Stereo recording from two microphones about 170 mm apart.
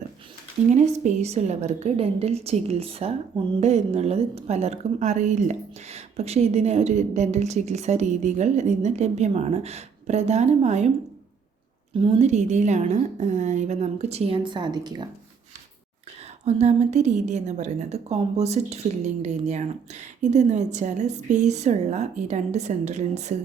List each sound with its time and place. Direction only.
0.7 s a woman's voice: 40° right (ahead or behind)
11.9 s a woman's voice: 30° right (ahead or behind)
16.5 s a woman's voice: 40° right (ahead or behind)